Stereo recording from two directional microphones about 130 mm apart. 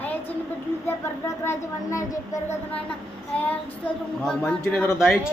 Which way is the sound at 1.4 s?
20° left (ahead or behind).